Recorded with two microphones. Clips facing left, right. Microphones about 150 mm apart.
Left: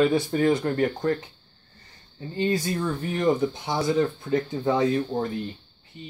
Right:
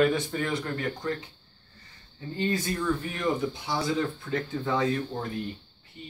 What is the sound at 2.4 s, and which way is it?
Speech, 35° left (ahead or behind).